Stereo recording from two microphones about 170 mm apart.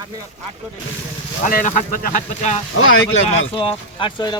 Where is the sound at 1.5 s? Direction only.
55° left (ahead or behind).